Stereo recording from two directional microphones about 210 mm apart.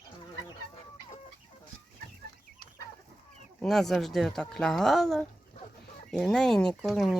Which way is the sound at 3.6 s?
Centre (ahead or behind).